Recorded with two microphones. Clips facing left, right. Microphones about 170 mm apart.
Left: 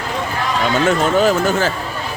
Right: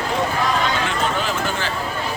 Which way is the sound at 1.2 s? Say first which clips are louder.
Left 9 dB; 45° left (ahead or behind).